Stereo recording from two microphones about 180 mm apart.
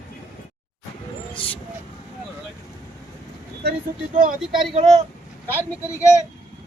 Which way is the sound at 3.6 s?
55° right (ahead or behind).